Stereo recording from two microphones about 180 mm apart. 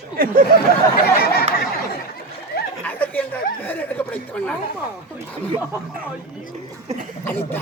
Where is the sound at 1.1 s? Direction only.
60° left (ahead or behind).